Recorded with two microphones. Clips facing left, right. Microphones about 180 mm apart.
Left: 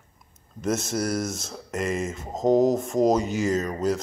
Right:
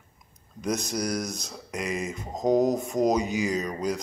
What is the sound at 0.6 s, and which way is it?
Speech, centre (ahead or behind).